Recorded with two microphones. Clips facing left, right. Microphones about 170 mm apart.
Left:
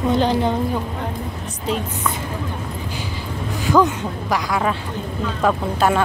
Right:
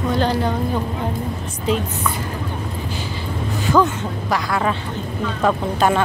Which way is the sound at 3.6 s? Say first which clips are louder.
Left 1 dB; 10° left (ahead or behind).